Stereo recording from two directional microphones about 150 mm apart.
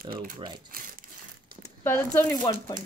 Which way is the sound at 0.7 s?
70° right (ahead or behind).